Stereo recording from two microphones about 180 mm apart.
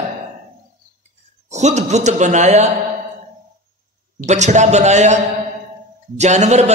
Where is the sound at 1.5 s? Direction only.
40° right (ahead or behind).